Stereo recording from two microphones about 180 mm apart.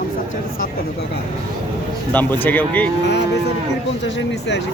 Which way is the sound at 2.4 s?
10° left (ahead or behind).